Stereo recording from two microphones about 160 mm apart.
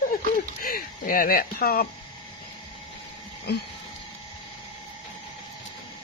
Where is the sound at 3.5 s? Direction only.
90° left.